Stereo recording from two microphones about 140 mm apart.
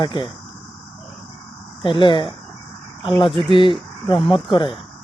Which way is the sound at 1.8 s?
35° left (ahead or behind).